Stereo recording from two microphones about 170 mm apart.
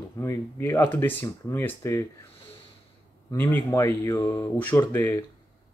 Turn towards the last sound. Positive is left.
turn(degrees=15)  # may be behind; listen again after turning